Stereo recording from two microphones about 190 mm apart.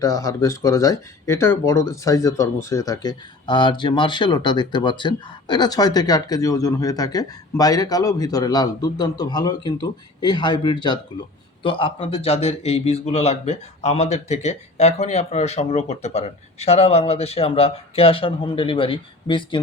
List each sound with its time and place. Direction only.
0.0 s a man's voice: 15° left (ahead or behind)